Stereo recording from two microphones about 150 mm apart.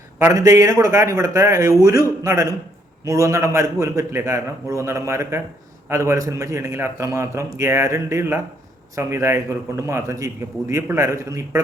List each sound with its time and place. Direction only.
0.3 s a man's voice: 20° right (ahead or behind)